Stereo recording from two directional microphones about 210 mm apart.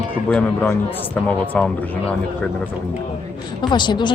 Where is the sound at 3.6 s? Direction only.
20° left (ahead or behind).